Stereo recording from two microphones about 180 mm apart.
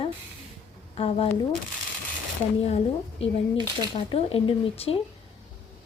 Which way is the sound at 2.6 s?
35° left (ahead or behind).